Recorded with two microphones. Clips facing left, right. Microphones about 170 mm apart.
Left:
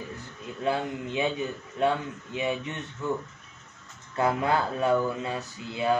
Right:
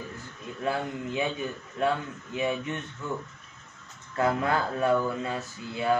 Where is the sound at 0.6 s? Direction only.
20° left (ahead or behind).